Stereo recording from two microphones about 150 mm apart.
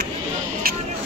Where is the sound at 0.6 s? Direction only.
80° right.